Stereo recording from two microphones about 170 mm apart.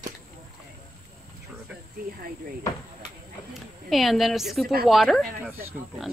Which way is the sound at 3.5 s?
Centre (ahead or behind).